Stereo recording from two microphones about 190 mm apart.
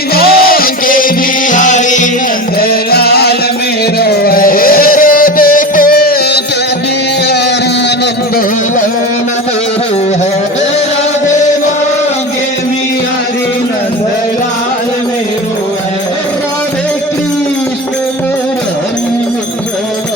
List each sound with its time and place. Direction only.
0.1 s music: 55° left (ahead or behind)
2.6 s music: 55° left (ahead or behind)